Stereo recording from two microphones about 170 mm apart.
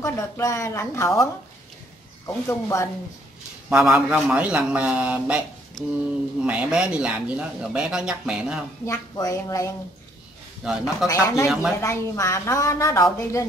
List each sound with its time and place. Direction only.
0.0 s a woman's voice: 20° left (ahead or behind)
2.2 s a woman's voice: 15° left (ahead or behind)
3.6 s a man's voice: 5° right (ahead or behind)
6.4 s speech: 5° right (ahead or behind)
8.8 s a woman's voice: 20° left (ahead or behind)
10.6 s speech: 5° right (ahead or behind)
11.1 s a woman's voice: 20° left (ahead or behind)
11.4 s speech: centre (ahead or behind)
11.8 s a woman's voice: 20° left (ahead or behind)